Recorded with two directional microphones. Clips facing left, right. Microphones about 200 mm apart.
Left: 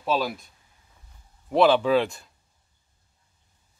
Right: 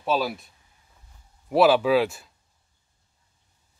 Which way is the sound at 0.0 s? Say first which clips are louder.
Right 1 dB; 5° right (ahead or behind).